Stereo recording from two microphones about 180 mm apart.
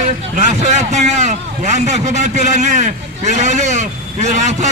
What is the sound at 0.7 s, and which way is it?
A man's voice, 40° right (ahead or behind).